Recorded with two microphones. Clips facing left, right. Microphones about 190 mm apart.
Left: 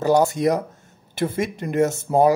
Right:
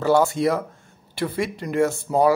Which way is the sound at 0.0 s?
20° left (ahead or behind).